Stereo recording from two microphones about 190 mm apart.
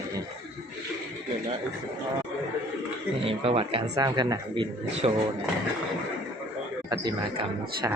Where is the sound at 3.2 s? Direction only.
30° right (ahead or behind).